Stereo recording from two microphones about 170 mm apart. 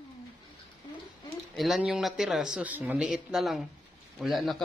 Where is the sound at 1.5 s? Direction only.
Centre (ahead or behind).